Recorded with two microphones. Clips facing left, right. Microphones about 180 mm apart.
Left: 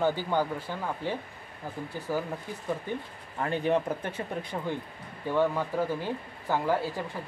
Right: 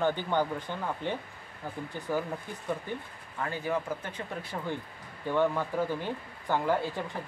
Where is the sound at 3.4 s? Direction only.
20° left (ahead or behind).